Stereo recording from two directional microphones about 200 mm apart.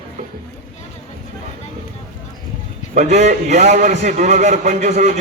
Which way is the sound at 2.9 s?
35° right (ahead or behind).